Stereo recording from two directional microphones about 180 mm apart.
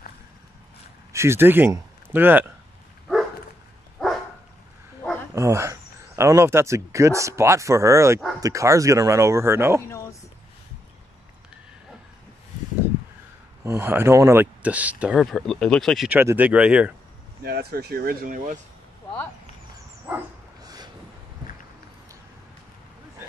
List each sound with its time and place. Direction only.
1.1 s a man's voice: 15° right (ahead or behind)
4.0 s dog: 5° left (ahead or behind)
5.3 s speech: 15° right (ahead or behind)
9.8 s a sound: 15° left (ahead or behind)
13.7 s speech: 10° right (ahead or behind)
16.2 s speech: 10° right (ahead or behind)
17.4 s speech: 60° right (ahead or behind)
20.6 s vehicle: 20° right (ahead or behind)